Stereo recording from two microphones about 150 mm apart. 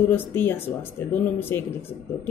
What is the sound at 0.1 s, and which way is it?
Speech, 15° left (ahead or behind).